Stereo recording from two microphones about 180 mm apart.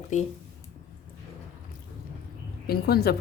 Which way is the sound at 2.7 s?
60° left (ahead or behind).